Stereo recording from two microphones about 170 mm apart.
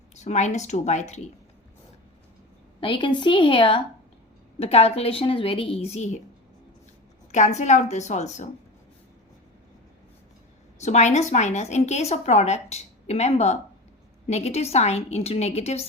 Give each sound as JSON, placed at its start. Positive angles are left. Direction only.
{"t": 0.1, "sound": "a woman's voice", "side_deg": 40}
{"t": 2.8, "sound": "a woman's voice", "side_deg": 30}
{"t": 7.3, "sound": "a woman's voice", "side_deg": 45}
{"t": 10.8, "sound": "a woman's voice", "side_deg": 40}